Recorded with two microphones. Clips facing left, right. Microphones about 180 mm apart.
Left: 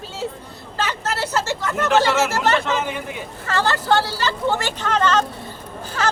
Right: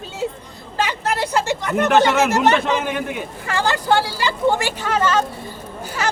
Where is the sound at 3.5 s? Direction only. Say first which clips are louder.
Even; 15° right (ahead or behind).